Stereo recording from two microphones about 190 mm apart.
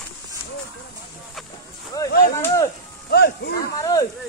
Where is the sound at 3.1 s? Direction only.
55° left (ahead or behind).